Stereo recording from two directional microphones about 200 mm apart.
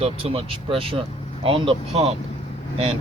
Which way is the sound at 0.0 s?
30° right (ahead or behind).